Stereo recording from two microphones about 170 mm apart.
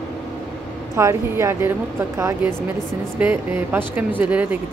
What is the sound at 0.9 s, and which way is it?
Speech, 15° right (ahead or behind).